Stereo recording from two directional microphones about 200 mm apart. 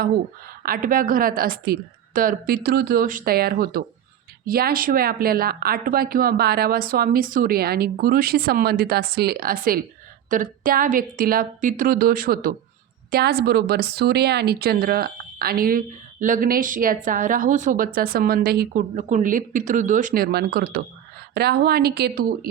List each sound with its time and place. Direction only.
0.6 s speech: 45° right (ahead or behind)